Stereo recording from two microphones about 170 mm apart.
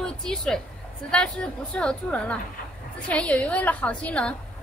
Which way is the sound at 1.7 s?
5° left (ahead or behind).